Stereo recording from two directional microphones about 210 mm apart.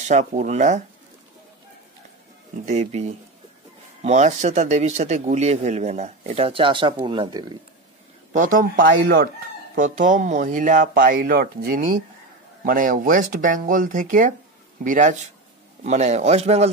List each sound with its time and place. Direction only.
0.1 s speech: 35° right (ahead or behind)
2.6 s speech: 35° right (ahead or behind)
8.3 s speech: 40° right (ahead or behind)